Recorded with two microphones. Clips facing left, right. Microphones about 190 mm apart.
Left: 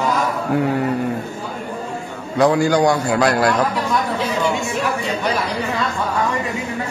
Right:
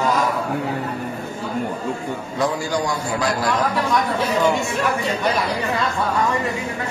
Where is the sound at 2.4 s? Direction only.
70° left (ahead or behind).